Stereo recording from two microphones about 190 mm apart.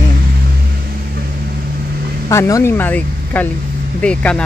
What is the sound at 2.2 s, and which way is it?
Speech, 15° left (ahead or behind).